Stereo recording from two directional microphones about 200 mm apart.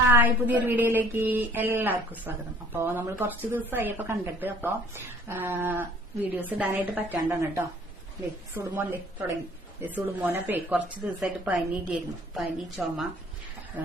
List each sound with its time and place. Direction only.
0.1 s a woman's voice: 10° right (ahead or behind)
8.5 s a woman's voice: 10° right (ahead or behind)